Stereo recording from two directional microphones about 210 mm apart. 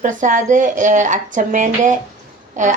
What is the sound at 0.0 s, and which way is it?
Speech, 35° right (ahead or behind).